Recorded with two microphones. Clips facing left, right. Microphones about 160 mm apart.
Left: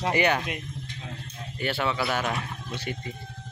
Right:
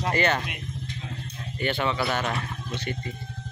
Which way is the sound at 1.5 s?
5° left (ahead or behind).